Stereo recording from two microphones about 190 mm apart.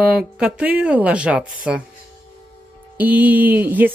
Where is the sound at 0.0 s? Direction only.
5° right (ahead or behind).